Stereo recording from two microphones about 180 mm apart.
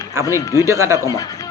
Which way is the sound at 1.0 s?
20° left (ahead or behind).